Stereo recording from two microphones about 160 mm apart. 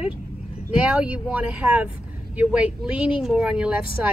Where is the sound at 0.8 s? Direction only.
5° right (ahead or behind).